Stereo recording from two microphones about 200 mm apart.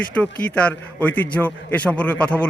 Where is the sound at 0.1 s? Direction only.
5° left (ahead or behind).